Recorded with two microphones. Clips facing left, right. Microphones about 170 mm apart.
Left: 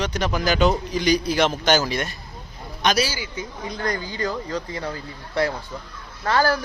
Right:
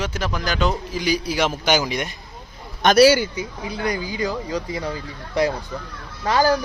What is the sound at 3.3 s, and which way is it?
Speech, 10° right (ahead or behind).